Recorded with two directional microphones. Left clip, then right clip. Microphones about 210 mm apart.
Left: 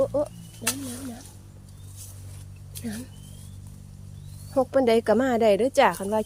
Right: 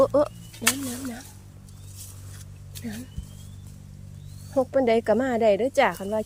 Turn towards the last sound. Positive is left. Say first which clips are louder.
# left 2 dB
turn(degrees=10)  # may be behind; listen again after turning